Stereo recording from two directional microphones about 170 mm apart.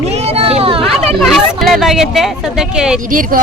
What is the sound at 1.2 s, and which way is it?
Speech, centre (ahead or behind).